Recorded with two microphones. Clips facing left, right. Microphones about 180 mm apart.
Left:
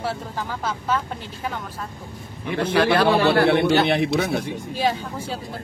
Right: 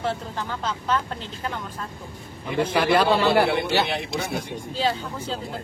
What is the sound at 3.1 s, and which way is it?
A man's voice, 65° left (ahead or behind).